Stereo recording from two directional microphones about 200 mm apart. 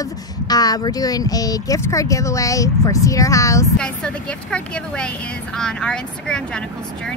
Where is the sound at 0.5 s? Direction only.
20° left (ahead or behind).